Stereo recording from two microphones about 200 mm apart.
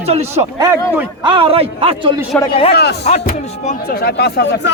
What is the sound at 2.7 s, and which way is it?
Speech, 55° left (ahead or behind).